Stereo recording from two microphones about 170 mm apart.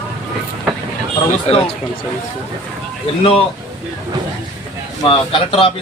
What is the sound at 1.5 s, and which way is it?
Speech, 35° left (ahead or behind).